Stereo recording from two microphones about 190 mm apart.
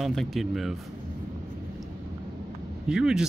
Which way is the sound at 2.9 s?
5° right (ahead or behind).